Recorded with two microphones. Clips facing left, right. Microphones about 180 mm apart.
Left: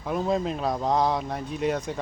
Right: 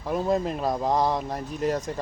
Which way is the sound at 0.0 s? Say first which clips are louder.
Right 1 dB; centre (ahead or behind).